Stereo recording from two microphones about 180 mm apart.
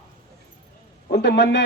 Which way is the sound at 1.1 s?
70° left (ahead or behind).